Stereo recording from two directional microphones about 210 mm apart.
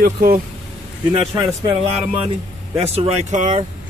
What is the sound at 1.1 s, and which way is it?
Speech, 20° right (ahead or behind).